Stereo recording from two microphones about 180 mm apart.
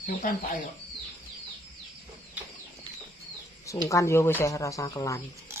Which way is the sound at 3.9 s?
15° left (ahead or behind).